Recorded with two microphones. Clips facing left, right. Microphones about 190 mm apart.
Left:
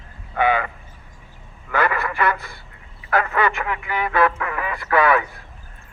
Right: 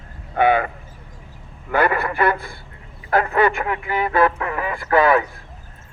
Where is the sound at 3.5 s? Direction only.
40° right (ahead or behind).